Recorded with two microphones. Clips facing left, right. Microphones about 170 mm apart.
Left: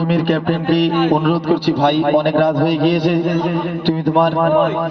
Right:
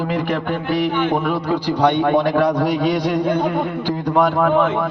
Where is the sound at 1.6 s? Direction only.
65° left (ahead or behind).